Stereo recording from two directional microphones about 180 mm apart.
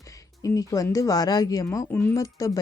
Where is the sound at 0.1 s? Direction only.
20° left (ahead or behind).